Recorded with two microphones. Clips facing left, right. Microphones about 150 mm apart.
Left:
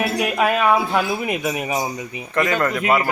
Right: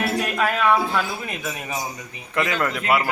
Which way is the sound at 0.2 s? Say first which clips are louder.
Left 3 dB; 15° left (ahead or behind).